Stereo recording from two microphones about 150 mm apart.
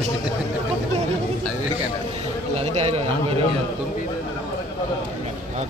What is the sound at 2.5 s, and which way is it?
Speech, 45° right (ahead or behind).